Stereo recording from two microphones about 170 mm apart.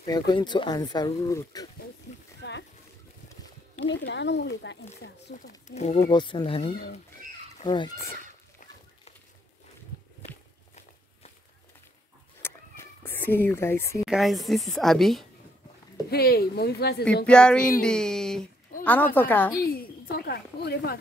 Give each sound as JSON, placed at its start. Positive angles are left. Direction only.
{"t": 0.0, "sound": "speech", "side_deg": 25}
{"t": 2.4, "sound": "a sound", "side_deg": 90}
{"t": 3.8, "sound": "speech", "side_deg": 90}
{"t": 5.3, "sound": "speech", "side_deg": 45}
{"t": 6.0, "sound": "speech", "side_deg": 25}
{"t": 6.6, "sound": "speech", "side_deg": 65}
{"t": 7.6, "sound": "speech", "side_deg": 25}
{"t": 10.2, "sound": "walk", "side_deg": 40}
{"t": 12.4, "sound": "cat", "side_deg": 15}
{"t": 14.0, "sound": "speech", "side_deg": 0}
{"t": 16.1, "sound": "speech", "side_deg": 65}
{"t": 17.3, "sound": "a woman's voice", "side_deg": 5}
{"t": 19.6, "sound": "a woman's voice", "side_deg": 60}